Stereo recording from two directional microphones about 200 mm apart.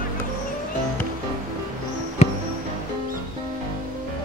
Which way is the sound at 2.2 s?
35° left (ahead or behind).